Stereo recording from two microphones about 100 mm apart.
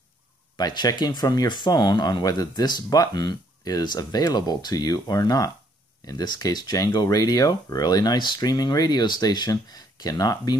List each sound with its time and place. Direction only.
0.6 s speech: 40° left (ahead or behind)